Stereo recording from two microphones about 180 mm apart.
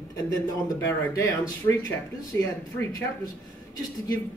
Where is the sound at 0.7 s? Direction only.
15° left (ahead or behind).